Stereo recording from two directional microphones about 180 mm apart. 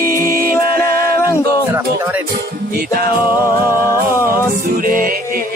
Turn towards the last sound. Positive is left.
turn(degrees=-50)  # may be behind; listen again after turning